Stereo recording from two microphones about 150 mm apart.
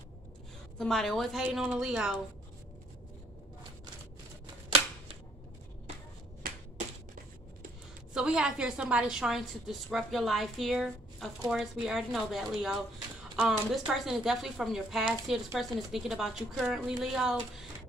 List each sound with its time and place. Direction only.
0.7 s a woman's voice: 5° left (ahead or behind)
6.4 s a sound: 80° right
8.1 s a woman's voice: 5° right (ahead or behind)